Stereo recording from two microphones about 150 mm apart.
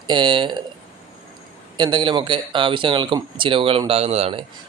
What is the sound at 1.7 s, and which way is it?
Speech, 30° right (ahead or behind).